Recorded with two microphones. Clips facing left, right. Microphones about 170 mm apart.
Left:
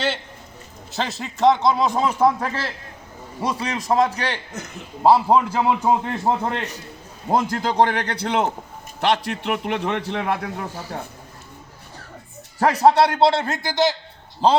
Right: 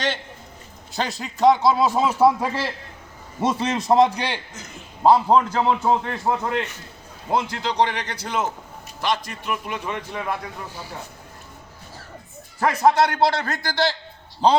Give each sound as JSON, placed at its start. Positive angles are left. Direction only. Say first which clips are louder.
{"t": 0.9, "sound": "speech", "louder": "even", "side_deg": 0}
{"t": 3.4, "sound": "a man's voice", "louder": "right 3 dB", "side_deg": -25}
{"t": 5.0, "sound": "a man's voice", "louder": "even", "side_deg": 5}
{"t": 6.2, "sound": "a man's voice", "louder": "left 1 dB", "side_deg": 35}
{"t": 12.5, "sound": "a man's voice", "louder": "left 2 dB", "side_deg": 35}
{"t": 14.4, "sound": "speech", "louder": "even", "side_deg": 0}